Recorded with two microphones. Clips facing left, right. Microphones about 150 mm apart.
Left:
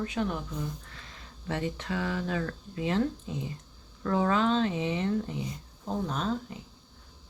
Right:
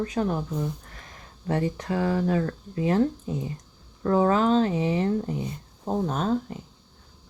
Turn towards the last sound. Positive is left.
turn(degrees=-45)  # may be behind; listen again after turning